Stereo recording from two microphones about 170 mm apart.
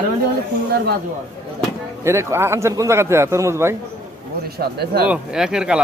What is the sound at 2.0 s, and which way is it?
A man's voice, 15° right (ahead or behind).